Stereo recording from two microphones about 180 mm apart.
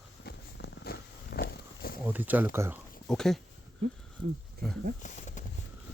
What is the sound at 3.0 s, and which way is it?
Speech, 5° left (ahead or behind).